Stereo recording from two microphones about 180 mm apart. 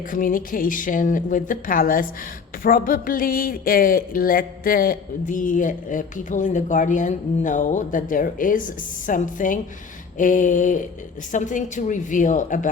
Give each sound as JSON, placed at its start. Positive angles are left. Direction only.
{"t": 0.1, "sound": "speech", "side_deg": 50}